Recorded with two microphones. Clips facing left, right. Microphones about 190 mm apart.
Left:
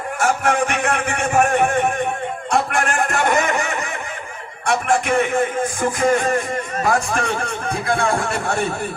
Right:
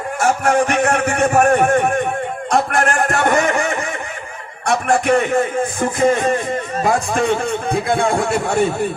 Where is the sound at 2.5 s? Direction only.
40° right (ahead or behind).